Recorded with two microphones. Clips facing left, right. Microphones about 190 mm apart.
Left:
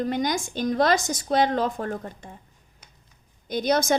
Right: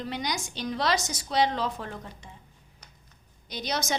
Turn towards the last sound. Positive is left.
turn(degrees=50)  # may be behind; listen again after turning